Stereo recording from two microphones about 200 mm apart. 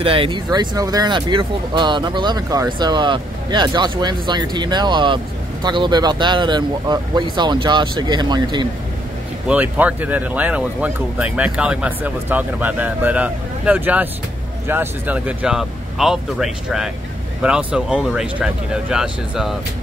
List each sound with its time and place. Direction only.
0.0 s speech: 25° right (ahead or behind)
9.5 s speech: 5° right (ahead or behind)